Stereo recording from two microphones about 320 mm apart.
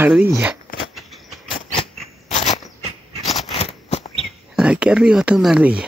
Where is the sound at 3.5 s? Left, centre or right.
Centre.